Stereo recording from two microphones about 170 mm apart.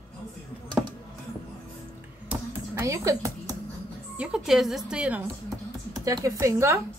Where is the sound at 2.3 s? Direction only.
15° right (ahead or behind).